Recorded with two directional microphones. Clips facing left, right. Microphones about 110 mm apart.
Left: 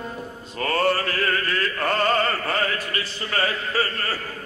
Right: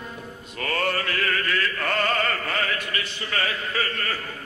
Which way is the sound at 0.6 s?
35° left (ahead or behind).